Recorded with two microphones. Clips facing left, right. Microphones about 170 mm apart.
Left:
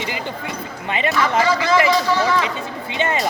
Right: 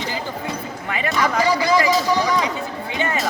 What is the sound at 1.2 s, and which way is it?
Speech, 15° right (ahead or behind).